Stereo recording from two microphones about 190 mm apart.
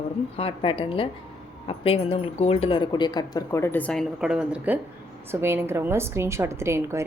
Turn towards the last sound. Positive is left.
turn(degrees=-15)  # may be behind; listen again after turning